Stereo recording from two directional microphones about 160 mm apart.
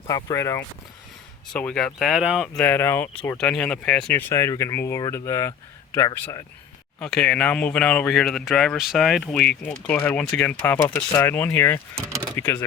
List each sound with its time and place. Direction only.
0.1 s speech: 20° left (ahead or behind)
1.5 s speech: 5° left (ahead or behind)
7.0 s speech: 5° left (ahead or behind)
11.9 s speech: 20° right (ahead or behind)
12.4 s speech: 10° left (ahead or behind)